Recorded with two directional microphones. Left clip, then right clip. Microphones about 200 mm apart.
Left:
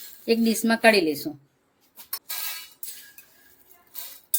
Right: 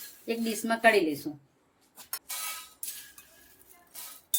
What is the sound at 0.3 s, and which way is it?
A woman's voice, 50° left (ahead or behind).